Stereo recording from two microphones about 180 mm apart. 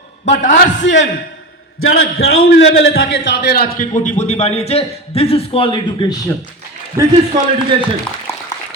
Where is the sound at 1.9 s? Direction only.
60° left (ahead or behind); by 6.1 s 25° left (ahead or behind).